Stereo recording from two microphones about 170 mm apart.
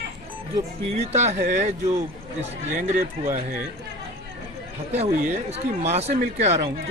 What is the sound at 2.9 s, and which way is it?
Speech, 50° right (ahead or behind).